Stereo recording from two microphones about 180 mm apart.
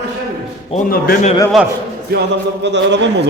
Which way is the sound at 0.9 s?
55° left (ahead or behind).